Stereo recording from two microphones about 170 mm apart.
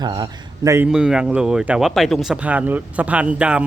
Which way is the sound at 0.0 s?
20° right (ahead or behind).